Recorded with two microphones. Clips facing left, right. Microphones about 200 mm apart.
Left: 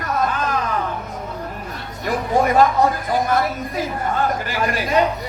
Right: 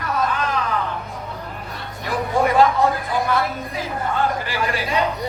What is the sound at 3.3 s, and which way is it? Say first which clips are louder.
Speech: left 1 dB; 45° left (ahead or behind).